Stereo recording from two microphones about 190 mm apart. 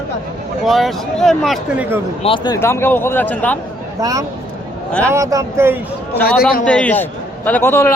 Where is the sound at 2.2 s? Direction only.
30° left (ahead or behind).